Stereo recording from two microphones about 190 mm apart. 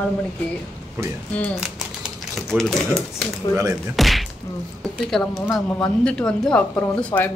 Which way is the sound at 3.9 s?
Centre (ahead or behind).